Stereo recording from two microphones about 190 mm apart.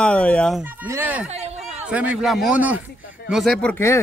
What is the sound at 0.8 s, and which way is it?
Speech, 10° right (ahead or behind).